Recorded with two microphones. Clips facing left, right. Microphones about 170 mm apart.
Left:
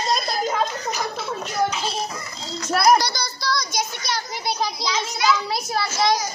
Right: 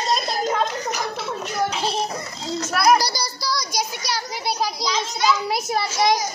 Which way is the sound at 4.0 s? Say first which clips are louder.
Right 1 dB; 10° right (ahead or behind).